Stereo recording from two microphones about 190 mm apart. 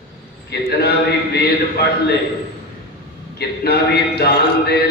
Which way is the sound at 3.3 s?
55° left (ahead or behind).